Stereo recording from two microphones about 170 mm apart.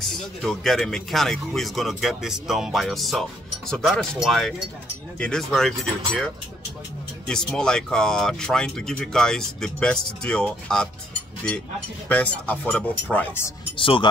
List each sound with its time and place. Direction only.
0.0 s speech: centre (ahead or behind)
12.1 s speech: 10° left (ahead or behind)
13.7 s speech: 30° left (ahead or behind)